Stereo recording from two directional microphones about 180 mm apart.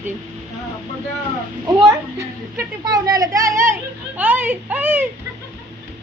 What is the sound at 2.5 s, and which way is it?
A woman's voice, 20° right (ahead or behind).